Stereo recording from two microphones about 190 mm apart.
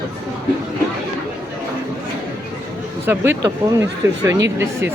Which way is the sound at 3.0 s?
10° right (ahead or behind).